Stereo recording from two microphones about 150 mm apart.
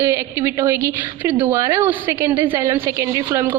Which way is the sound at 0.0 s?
20° right (ahead or behind).